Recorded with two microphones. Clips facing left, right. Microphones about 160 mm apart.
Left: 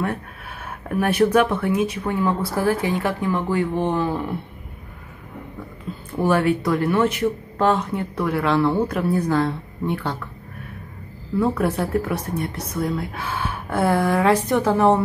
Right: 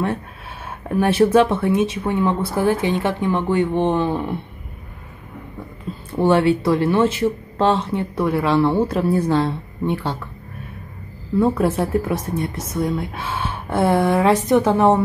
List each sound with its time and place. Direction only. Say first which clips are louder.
0.0 s speech: right 3 dB; 25° right (ahead or behind)
6.1 s speech: right 3 dB; 30° right (ahead or behind)
11.3 s speech: right 3 dB; 25° right (ahead or behind)